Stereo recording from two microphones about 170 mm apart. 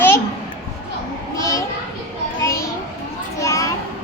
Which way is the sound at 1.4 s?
20° left (ahead or behind).